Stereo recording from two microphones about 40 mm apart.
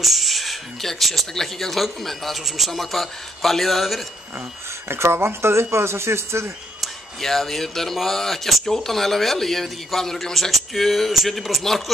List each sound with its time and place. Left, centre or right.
0.0 s a man's voice: centre
4.8 s speech: right
7.2 s speech: centre